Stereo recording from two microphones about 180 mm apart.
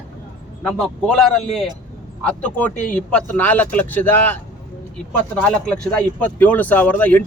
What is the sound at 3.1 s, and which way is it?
Speech, 5° left (ahead or behind).